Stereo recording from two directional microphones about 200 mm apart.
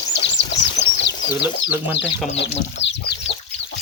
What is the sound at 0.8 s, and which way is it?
Bird, 60° left (ahead or behind).